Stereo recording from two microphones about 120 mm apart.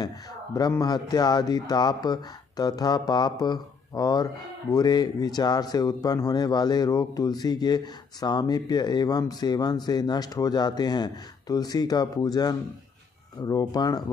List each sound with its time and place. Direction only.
0.6 s speech: 35° left (ahead or behind)